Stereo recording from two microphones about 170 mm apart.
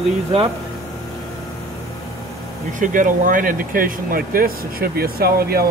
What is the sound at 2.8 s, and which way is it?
Speech, 50° right (ahead or behind).